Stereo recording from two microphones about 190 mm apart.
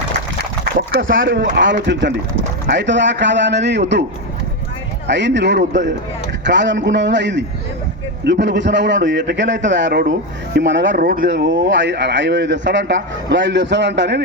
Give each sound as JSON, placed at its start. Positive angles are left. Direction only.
{"t": 0.8, "sound": "a man's voice", "side_deg": -75}
{"t": 5.0, "sound": "a man's voice", "side_deg": -70}
{"t": 10.9, "sound": "speech", "side_deg": -50}
{"t": 11.3, "sound": "a man's voice", "side_deg": -70}